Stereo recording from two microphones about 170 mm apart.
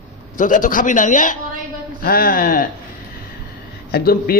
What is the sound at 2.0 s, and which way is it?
Speech, 60° left (ahead or behind).